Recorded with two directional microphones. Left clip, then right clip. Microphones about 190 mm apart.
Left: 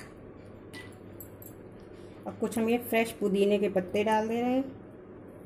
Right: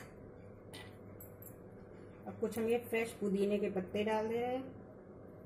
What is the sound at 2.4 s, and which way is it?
A woman's voice, 40° left (ahead or behind).